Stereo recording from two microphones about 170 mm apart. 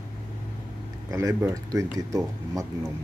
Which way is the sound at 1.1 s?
20° right (ahead or behind).